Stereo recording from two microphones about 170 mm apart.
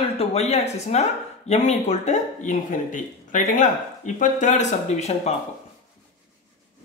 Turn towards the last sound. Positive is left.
turn(degrees=40)  # may be behind; listen again after turning